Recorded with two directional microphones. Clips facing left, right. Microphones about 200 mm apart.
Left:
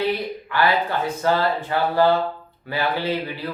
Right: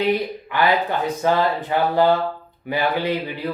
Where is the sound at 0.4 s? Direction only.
20° right (ahead or behind).